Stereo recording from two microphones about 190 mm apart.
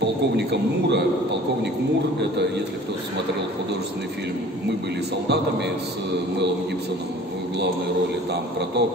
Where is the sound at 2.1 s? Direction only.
65° right (ahead or behind).